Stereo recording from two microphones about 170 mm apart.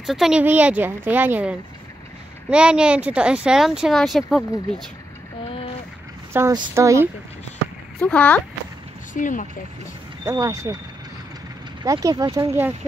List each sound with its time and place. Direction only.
0.0 s speech: centre (ahead or behind)
6.3 s speech: 15° right (ahead or behind)
8.0 s speech: 10° left (ahead or behind)
9.1 s speech: 50° left (ahead or behind)
10.2 s speech: 20° right (ahead or behind)
11.8 s speech: 20° right (ahead or behind)